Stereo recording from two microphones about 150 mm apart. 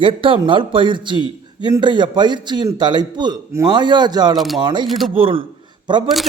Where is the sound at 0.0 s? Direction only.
35° right (ahead or behind).